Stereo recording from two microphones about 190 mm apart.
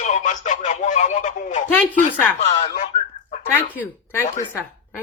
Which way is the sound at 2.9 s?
40° left (ahead or behind).